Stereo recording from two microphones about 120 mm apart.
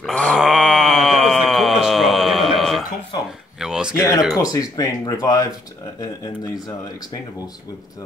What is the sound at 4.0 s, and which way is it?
Speech, 30° left (ahead or behind).